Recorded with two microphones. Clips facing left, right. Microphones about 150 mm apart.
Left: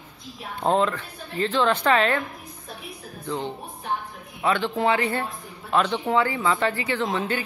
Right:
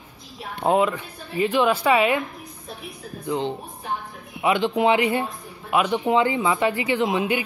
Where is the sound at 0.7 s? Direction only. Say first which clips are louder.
Right 2 dB; 10° right (ahead or behind).